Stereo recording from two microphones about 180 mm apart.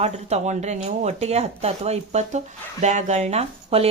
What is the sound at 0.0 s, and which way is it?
Speech, 35° right (ahead or behind).